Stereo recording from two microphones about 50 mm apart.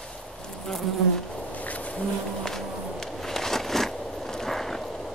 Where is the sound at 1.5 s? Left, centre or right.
Left.